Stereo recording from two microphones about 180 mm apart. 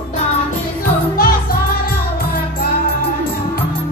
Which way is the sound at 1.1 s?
55° left (ahead or behind).